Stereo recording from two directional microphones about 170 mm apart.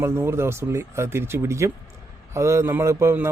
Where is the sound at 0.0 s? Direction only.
15° right (ahead or behind).